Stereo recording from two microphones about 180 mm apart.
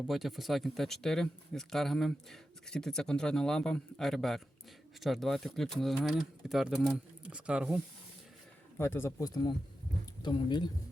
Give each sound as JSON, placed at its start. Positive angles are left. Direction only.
{"t": 0.1, "sound": "speech", "side_deg": 0}
{"t": 8.8, "sound": "speech", "side_deg": 15}